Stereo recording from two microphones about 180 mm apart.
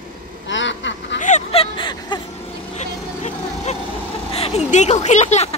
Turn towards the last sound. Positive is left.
turn(degrees=40)  # may be behind; listen again after turning